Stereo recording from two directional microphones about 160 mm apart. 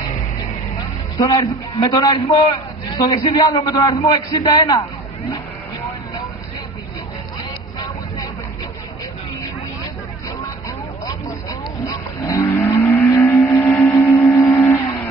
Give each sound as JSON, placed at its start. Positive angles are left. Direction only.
{"t": 1.1, "sound": "a man's voice", "side_deg": 25}
{"t": 12.3, "sound": "vehicle", "side_deg": 15}